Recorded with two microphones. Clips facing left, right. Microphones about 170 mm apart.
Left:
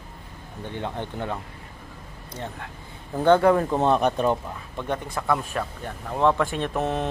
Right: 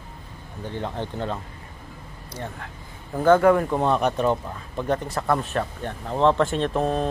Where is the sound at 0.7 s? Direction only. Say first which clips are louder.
Right 1 dB; 15° left (ahead or behind).